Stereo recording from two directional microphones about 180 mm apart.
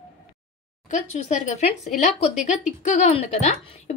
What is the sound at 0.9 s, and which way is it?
Speech, 40° left (ahead or behind).